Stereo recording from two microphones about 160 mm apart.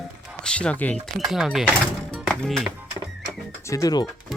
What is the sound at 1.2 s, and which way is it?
Speech, centre (ahead or behind).